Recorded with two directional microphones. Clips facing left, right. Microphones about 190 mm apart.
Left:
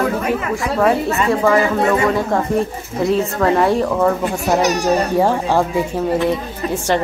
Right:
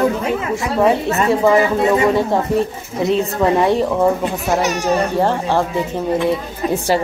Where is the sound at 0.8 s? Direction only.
20° right (ahead or behind).